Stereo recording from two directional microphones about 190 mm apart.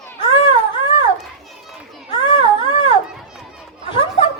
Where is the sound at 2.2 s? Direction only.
30° left (ahead or behind).